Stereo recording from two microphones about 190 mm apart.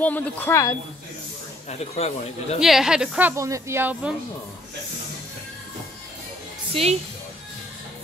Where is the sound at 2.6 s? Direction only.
Centre (ahead or behind).